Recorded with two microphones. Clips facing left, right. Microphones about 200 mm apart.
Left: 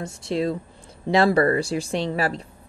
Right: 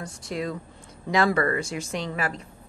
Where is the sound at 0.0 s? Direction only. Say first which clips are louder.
Left 6 dB; 30° left (ahead or behind).